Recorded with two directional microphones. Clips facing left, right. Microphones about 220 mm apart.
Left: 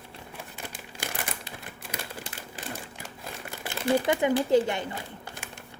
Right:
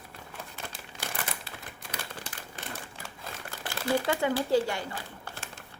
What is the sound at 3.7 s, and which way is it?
Speech, 20° left (ahead or behind).